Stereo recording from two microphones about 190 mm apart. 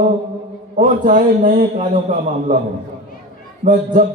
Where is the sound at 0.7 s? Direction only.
45° right (ahead or behind).